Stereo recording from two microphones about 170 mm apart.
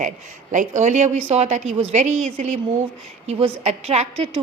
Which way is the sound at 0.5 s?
45° right (ahead or behind).